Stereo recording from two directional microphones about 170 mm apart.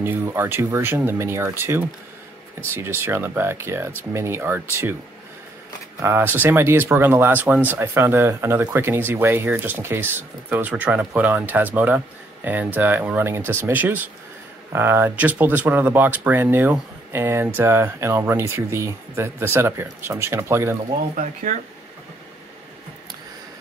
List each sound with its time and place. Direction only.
0.0 s speech: 15° right (ahead or behind)
5.9 s speech: 15° right (ahead or behind)
21.2 s speech: 50° right (ahead or behind)